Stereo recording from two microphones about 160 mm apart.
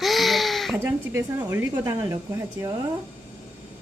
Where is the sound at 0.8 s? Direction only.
15° right (ahead or behind).